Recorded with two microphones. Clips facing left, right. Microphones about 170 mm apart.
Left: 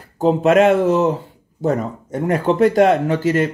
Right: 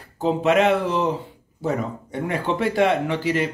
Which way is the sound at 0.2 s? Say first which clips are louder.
Left 5 dB; 45° left (ahead or behind).